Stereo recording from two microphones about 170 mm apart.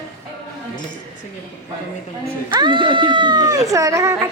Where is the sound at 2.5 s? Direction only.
25° right (ahead or behind).